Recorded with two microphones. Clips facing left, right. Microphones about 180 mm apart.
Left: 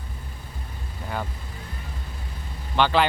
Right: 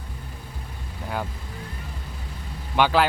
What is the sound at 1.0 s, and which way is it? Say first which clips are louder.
Vehicle: right 1 dB; 5° right (ahead or behind).